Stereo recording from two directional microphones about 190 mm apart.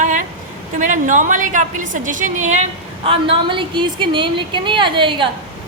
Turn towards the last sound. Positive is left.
turn(degrees=-25)  # may be behind; listen again after turning